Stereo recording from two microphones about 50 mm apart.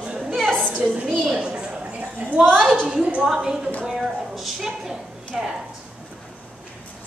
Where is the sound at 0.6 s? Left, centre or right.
Right.